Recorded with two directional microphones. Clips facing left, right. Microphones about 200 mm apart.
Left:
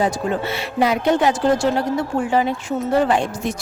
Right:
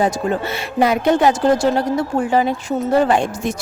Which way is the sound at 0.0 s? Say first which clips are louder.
Right 2 dB; 45° right (ahead or behind).